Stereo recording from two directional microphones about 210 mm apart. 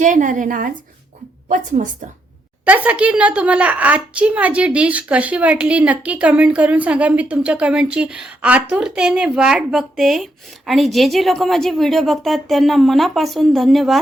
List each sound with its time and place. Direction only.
0.0 s a woman's voice: 35° right (ahead or behind)
2.6 s a woman's voice: 5° right (ahead or behind)